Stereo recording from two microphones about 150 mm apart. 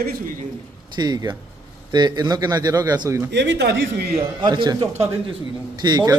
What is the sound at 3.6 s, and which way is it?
Speech, 90° right.